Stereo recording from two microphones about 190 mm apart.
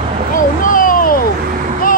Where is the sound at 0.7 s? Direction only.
45° left (ahead or behind).